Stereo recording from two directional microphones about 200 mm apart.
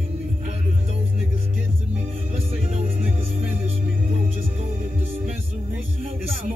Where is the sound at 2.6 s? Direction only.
35° right (ahead or behind).